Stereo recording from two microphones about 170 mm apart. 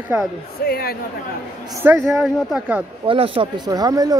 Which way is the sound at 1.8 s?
15° right (ahead or behind).